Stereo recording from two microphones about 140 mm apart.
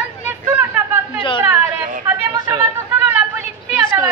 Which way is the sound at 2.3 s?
25° right (ahead or behind).